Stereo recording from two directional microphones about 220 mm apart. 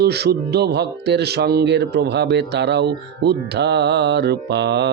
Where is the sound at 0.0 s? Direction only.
45° right (ahead or behind).